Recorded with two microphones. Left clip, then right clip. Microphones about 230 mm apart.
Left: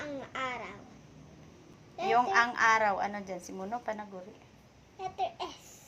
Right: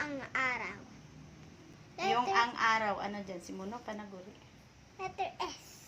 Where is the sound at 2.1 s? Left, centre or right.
Left.